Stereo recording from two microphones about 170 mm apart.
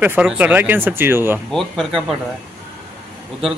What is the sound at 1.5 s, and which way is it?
Speech, centre (ahead or behind).